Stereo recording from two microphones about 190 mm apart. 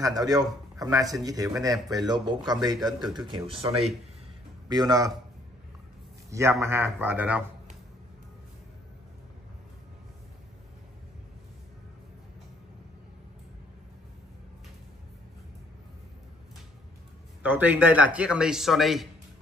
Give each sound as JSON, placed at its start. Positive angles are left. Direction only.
{"t": 0.0, "sound": "a man's voice", "side_deg": -20}
{"t": 6.6, "sound": "speech", "side_deg": -10}
{"t": 17.4, "sound": "speech", "side_deg": -10}